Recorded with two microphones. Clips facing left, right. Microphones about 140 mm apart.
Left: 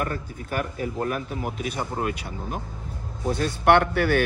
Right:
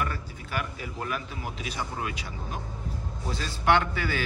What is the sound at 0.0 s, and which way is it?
A man's voice, 45° left (ahead or behind).